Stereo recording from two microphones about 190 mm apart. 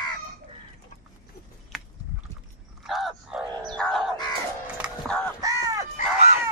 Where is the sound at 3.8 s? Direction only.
Centre (ahead or behind).